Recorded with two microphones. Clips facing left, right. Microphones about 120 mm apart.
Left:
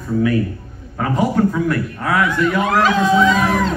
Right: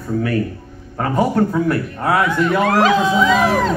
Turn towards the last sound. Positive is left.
turn(degrees=-35)  # may be behind; listen again after turning